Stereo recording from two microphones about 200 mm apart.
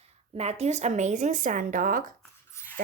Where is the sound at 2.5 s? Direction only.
15° left (ahead or behind).